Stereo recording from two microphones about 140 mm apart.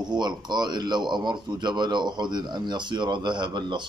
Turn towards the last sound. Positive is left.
turn(degrees=-35)  # may be behind; listen again after turning